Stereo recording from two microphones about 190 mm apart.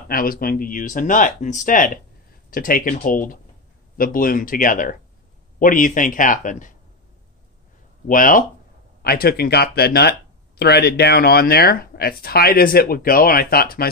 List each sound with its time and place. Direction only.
0.1 s speech: 50° left (ahead or behind)
8.1 s speech: 45° left (ahead or behind)